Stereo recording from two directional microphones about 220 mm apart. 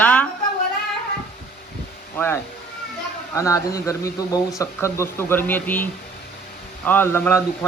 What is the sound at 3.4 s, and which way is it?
A man's voice, 15° left (ahead or behind).